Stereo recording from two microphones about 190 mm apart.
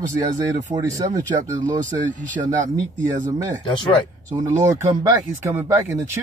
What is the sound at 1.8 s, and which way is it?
Speech, 45° right (ahead or behind).